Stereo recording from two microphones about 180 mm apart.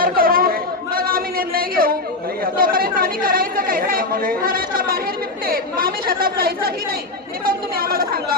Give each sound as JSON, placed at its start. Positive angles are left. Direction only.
{"t": 0.0, "sound": "chatter", "side_deg": -55}
{"t": 0.9, "sound": "a sound", "side_deg": -55}
{"t": 2.4, "sound": "speech", "side_deg": -55}